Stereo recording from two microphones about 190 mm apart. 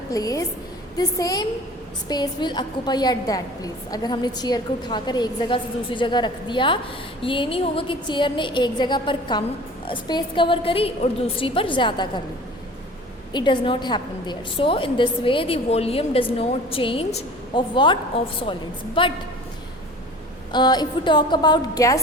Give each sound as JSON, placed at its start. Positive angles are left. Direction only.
{"t": 0.1, "sound": "a woman's voice", "side_deg": 20}
{"t": 13.3, "sound": "a woman's voice", "side_deg": 25}
{"t": 20.5, "sound": "a woman's voice", "side_deg": 20}